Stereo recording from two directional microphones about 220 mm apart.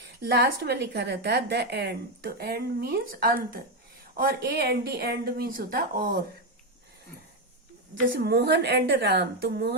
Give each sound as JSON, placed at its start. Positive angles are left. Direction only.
{"t": 0.3, "sound": "a woman's voice", "side_deg": -45}
{"t": 7.9, "sound": "a woman's voice", "side_deg": -50}